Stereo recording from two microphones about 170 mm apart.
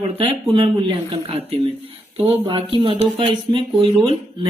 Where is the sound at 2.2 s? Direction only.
25° right (ahead or behind).